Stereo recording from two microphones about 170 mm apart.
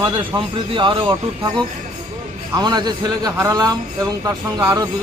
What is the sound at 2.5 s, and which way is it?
A man's voice, 25° right (ahead or behind).